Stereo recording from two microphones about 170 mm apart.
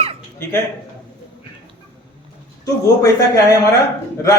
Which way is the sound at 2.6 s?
20° left (ahead or behind).